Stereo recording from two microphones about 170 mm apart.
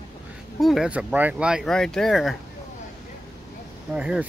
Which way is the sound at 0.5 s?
Centre (ahead or behind).